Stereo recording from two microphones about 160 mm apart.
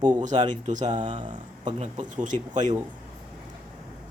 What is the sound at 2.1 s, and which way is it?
Speech, 50° right (ahead or behind).